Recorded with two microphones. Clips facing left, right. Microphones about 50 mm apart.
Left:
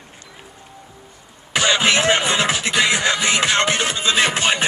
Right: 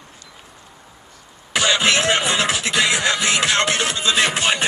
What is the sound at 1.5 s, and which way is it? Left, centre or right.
Music, centre.